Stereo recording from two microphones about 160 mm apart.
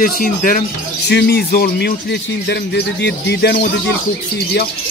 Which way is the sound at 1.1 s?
85° left.